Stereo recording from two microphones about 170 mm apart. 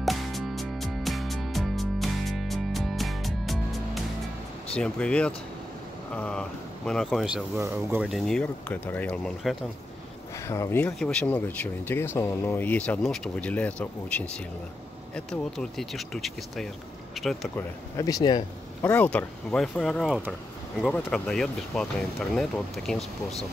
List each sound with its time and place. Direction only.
0.0 s music: centre (ahead or behind)
4.7 s speech: 5° left (ahead or behind)
10.4 s speech: 15° left (ahead or behind)
10.9 s speech: 5° left (ahead or behind)
17.6 s speech: 20° left (ahead or behind)
18.9 s speech: 10° left (ahead or behind)